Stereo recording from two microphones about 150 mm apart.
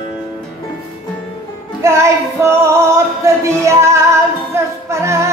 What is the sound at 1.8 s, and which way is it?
Music, 20° right (ahead or behind).